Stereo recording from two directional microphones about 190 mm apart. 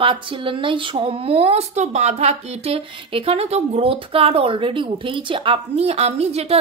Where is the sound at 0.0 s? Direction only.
25° right (ahead or behind).